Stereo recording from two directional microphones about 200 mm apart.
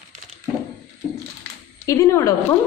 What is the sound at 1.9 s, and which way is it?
Speech, 15° left (ahead or behind).